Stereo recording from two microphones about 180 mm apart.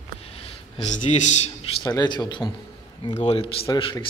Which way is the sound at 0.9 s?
40° left (ahead or behind).